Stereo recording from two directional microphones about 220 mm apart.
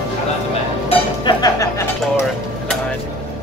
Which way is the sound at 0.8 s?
20° left (ahead or behind).